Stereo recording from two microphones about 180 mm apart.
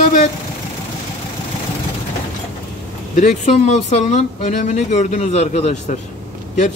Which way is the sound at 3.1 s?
40° left (ahead or behind).